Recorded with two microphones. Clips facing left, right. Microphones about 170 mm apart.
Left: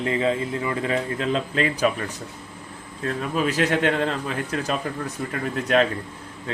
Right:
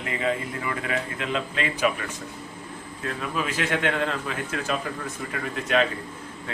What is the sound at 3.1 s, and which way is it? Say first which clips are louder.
Speech: left 5 dB; 40° left (ahead or behind).